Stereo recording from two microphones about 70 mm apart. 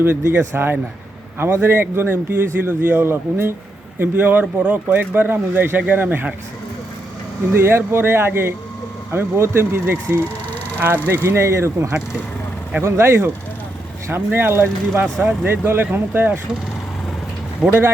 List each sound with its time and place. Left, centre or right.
0.0 s a man's voice: right
7.5 s a man's voice: right